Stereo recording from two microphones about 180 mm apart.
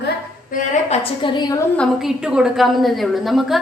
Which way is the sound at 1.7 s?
Centre (ahead or behind).